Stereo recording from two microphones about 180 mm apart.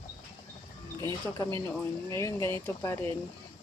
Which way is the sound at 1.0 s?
20° left (ahead or behind).